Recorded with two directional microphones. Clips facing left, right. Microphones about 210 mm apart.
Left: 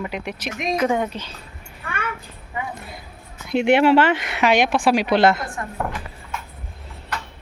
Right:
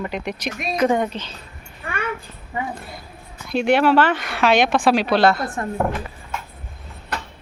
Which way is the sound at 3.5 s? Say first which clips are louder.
Left 1 dB; 20° left (ahead or behind).